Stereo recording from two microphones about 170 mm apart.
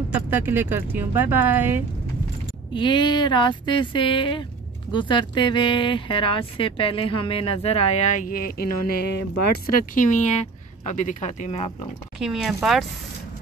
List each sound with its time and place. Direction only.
0.1 s speech: 10° right (ahead or behind)
2.7 s speech: 30° left (ahead or behind)
12.2 s speech: centre (ahead or behind)